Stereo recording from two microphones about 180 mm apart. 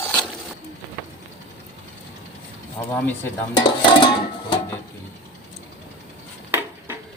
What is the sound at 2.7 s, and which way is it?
Speech, 10° left (ahead or behind).